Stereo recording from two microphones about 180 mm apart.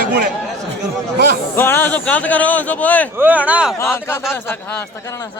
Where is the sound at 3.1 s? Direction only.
10° right (ahead or behind).